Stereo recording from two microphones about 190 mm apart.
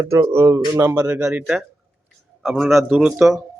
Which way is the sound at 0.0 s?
15° right (ahead or behind).